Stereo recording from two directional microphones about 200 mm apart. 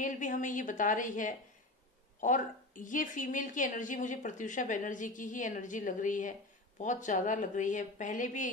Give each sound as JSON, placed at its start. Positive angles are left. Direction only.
{"t": 0.0, "sound": "a woman's voice", "side_deg": 40}